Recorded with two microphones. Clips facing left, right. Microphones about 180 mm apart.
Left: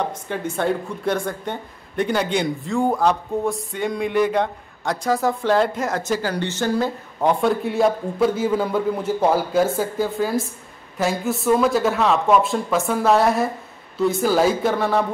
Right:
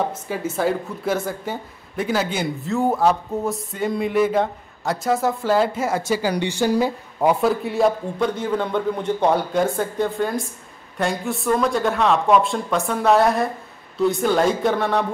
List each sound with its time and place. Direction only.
0.0 s speech: 5° right (ahead or behind)